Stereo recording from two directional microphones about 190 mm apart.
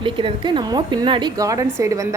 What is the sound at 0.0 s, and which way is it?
A woman's voice, 25° right (ahead or behind).